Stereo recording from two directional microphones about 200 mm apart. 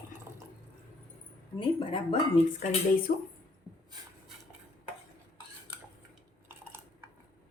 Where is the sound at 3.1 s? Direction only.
40° left (ahead or behind).